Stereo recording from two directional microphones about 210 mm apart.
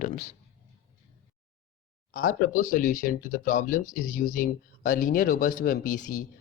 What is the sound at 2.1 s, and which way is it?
Speech, 40° left (ahead or behind).